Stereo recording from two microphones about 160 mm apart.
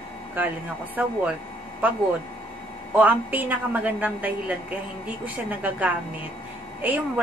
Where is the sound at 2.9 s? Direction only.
10° right (ahead or behind).